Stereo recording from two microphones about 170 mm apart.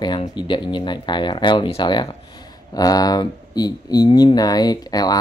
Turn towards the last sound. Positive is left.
turn(degrees=20)  # may be behind; listen again after turning